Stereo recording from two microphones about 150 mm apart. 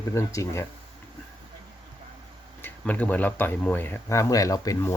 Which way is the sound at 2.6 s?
10° left (ahead or behind).